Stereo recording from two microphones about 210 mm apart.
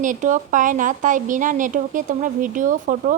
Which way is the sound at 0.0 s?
35° right (ahead or behind).